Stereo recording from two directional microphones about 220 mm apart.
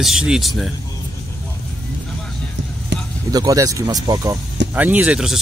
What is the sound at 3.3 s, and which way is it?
Speech, 15° right (ahead or behind).